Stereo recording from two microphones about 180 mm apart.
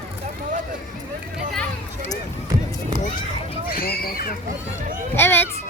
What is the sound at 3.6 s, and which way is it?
Speech, 55° left (ahead or behind).